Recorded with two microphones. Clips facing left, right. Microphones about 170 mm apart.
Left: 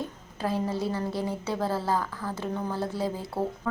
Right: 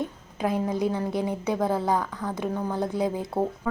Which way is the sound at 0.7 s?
15° right (ahead or behind).